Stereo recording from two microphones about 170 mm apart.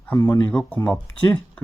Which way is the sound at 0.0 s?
15° left (ahead or behind).